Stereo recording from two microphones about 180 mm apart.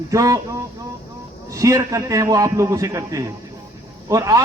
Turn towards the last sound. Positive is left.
turn(degrees=-20)  # may be behind; listen again after turning